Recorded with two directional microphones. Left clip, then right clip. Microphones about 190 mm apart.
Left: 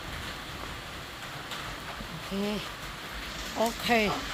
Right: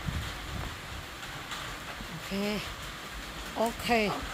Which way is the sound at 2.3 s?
30° right (ahead or behind).